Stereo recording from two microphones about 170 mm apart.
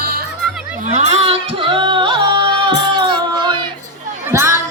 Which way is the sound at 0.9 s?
40° right (ahead or behind).